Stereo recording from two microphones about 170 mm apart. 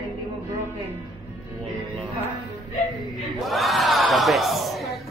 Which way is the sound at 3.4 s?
Centre (ahead or behind).